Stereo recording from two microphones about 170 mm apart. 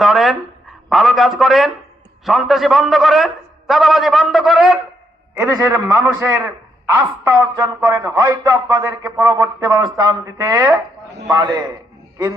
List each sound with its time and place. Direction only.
0.0 s a man's voice: centre (ahead or behind)
5.3 s a man's voice: 20° right (ahead or behind)